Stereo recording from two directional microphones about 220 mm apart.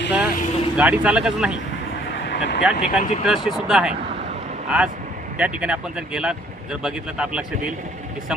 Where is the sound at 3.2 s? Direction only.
Centre (ahead or behind).